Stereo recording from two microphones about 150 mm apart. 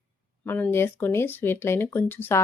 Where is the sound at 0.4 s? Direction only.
15° left (ahead or behind).